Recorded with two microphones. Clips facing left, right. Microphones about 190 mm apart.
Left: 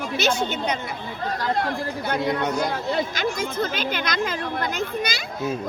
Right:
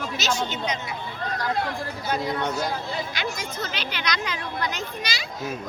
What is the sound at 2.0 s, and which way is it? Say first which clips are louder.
Speech: left 2 dB; 60° left (ahead or behind).